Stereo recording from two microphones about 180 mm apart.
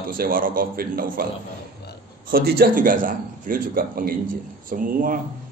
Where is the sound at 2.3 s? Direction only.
55° right (ahead or behind).